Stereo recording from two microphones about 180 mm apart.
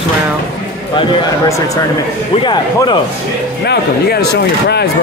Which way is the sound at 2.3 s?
25° left (ahead or behind).